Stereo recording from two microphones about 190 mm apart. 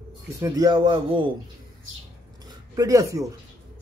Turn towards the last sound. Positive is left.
turn(degrees=-15)  # may be behind; listen again after turning